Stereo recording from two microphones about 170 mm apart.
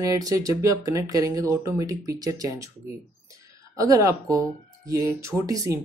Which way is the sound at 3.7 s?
20° right (ahead or behind).